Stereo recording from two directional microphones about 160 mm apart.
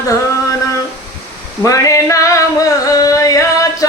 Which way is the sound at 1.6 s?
20° left (ahead or behind).